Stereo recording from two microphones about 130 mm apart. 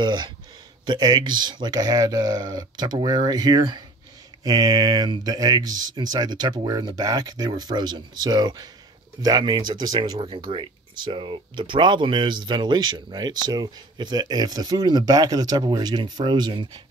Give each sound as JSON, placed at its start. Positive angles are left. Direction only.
{"t": 0.0, "sound": "speech", "side_deg": -35}